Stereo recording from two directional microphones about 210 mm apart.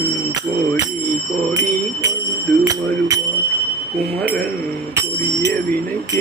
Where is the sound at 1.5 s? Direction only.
15° right (ahead or behind).